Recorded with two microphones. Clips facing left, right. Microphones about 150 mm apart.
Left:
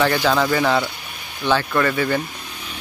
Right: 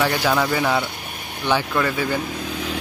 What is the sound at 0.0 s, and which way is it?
Speech, 10° right (ahead or behind).